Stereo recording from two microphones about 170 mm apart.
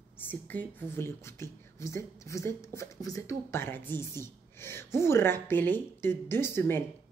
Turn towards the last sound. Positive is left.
turn(degrees=15)  # may be behind; listen again after turning